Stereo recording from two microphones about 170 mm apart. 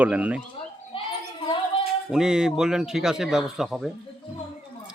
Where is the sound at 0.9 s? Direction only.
30° left (ahead or behind).